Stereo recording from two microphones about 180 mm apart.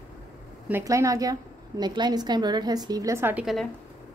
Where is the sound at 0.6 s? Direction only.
15° right (ahead or behind).